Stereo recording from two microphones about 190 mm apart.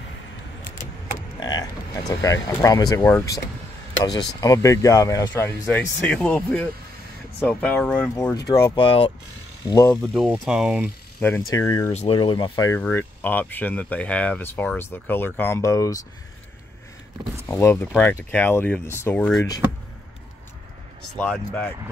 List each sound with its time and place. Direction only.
1.4 s a sound: 20° left (ahead or behind)
2.4 s speech: 20° left (ahead or behind)
4.4 s speech: 15° left (ahead or behind)
8.5 s speech: 20° left (ahead or behind)
9.7 s speech: 15° left (ahead or behind)
10.1 s speech: 5° right (ahead or behind)
11.1 s speech: 10° left (ahead or behind)
11.9 s speech: 30° left (ahead or behind)
17.5 s speech: 15° left (ahead or behind)